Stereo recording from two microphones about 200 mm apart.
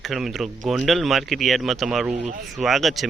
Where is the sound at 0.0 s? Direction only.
Centre (ahead or behind).